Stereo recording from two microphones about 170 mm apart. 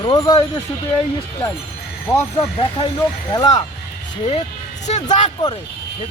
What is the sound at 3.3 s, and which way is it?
Speech, 20° left (ahead or behind).